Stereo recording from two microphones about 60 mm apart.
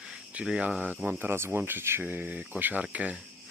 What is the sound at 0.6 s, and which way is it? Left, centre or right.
Speech, right.